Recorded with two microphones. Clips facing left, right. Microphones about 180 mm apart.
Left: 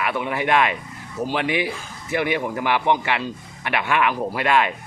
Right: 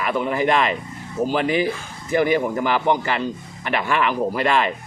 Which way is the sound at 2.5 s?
5° left (ahead or behind).